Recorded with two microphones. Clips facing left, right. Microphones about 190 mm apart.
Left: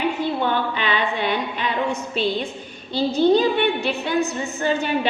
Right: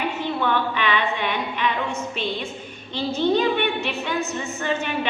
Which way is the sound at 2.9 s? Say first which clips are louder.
Left 4 dB; 35° left (ahead or behind).